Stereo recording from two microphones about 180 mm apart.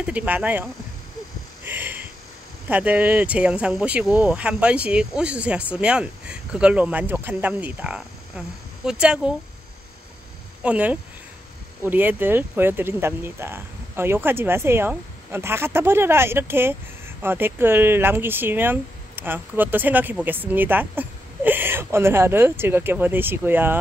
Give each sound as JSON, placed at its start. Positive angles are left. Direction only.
{"t": 0.0, "sound": "speech", "side_deg": -5}
{"t": 1.6, "sound": "a sound", "side_deg": -10}
{"t": 2.7, "sound": "speech", "side_deg": -10}
{"t": 10.6, "sound": "speech", "side_deg": -10}